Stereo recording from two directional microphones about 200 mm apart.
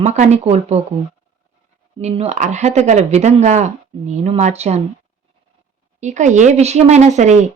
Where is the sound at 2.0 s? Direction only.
30° right (ahead or behind).